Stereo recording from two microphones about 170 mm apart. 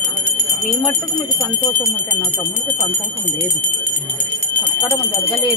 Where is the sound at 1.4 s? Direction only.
15° left (ahead or behind).